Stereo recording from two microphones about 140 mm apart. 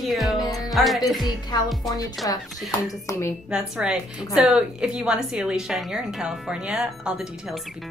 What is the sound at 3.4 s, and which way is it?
Speech, 5° right (ahead or behind).